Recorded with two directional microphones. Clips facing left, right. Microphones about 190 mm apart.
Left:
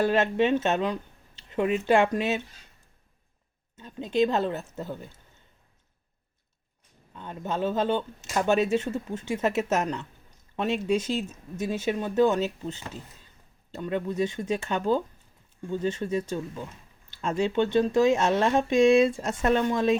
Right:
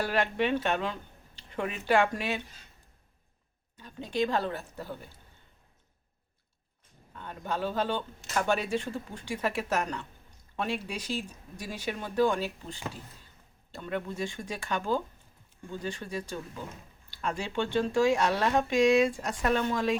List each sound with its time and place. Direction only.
0.0 s speech: 20° left (ahead or behind)
3.8 s speech: 20° left (ahead or behind)
7.2 s speech: 20° left (ahead or behind)